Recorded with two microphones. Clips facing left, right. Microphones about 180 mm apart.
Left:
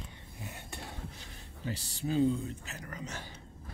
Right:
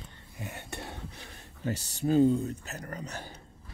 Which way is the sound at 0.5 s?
65° right (ahead or behind).